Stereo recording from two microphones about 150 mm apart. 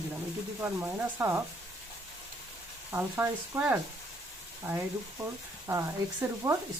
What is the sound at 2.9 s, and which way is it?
Speech, 15° right (ahead or behind).